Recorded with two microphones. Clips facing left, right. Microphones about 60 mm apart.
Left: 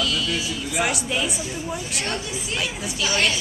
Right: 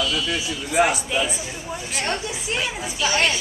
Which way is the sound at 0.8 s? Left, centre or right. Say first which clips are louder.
Right 6 dB; right.